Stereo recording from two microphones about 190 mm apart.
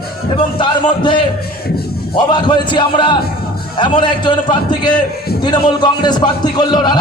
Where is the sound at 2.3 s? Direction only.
25° left (ahead or behind).